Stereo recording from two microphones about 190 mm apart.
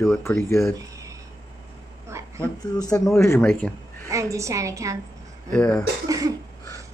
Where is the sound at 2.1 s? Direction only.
15° right (ahead or behind).